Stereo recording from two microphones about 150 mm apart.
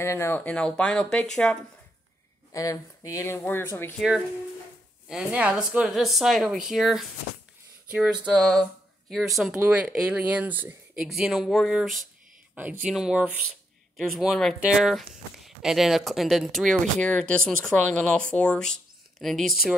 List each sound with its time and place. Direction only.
0.0 s speech: 20° left (ahead or behind)
2.5 s speech: 20° left (ahead or behind)
5.0 s speech: 10° right (ahead or behind)
12.5 s speech: 10° right (ahead or behind)